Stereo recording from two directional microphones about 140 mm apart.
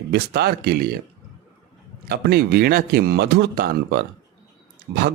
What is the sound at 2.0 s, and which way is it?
Speech, 90° right.